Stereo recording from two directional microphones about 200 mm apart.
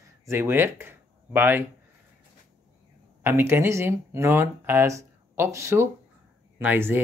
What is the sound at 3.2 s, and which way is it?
Speech, 10° right (ahead or behind).